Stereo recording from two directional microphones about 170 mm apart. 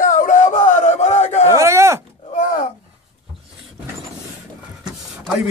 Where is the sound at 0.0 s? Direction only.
50° left (ahead or behind).